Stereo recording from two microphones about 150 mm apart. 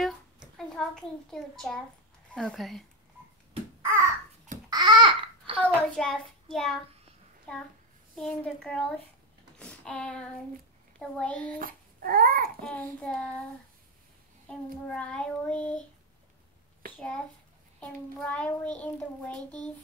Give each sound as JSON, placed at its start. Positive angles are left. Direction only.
{"t": 0.0, "sound": "a sound", "side_deg": 0}
{"t": 2.3, "sound": "a woman's voice", "side_deg": 0}
{"t": 3.8, "sound": "babbling", "side_deg": -15}
{"t": 4.6, "sound": "babbling", "side_deg": -30}
{"t": 5.6, "sound": "a child's voice", "side_deg": 5}
{"t": 9.6, "sound": "a sound", "side_deg": 5}
{"t": 11.0, "sound": "child singing", "side_deg": 10}
{"t": 11.5, "sound": "speech", "side_deg": -70}
{"t": 12.6, "sound": "child singing", "side_deg": 10}
{"t": 14.5, "sound": "child singing", "side_deg": 5}
{"t": 16.9, "sound": "a child's voice", "side_deg": 10}
{"t": 17.7, "sound": "child singing", "side_deg": 10}